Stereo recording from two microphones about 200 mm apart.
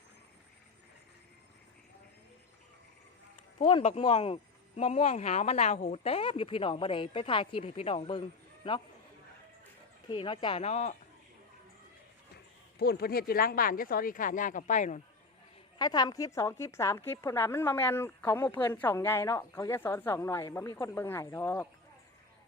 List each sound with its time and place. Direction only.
3.8 s speech: 35° left (ahead or behind)
10.1 s speech: 25° left (ahead or behind)
12.8 s speech: 50° left (ahead or behind)
15.8 s a woman's voice: 20° left (ahead or behind)